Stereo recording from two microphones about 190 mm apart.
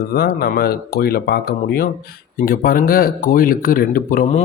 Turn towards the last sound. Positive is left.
turn(degrees=45)  # may be behind; listen again after turning